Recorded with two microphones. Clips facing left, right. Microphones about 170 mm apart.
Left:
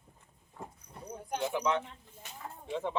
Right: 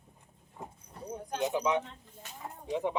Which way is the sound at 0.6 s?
20° right (ahead or behind).